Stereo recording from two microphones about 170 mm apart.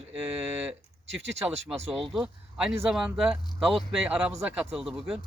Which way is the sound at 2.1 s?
Centre (ahead or behind).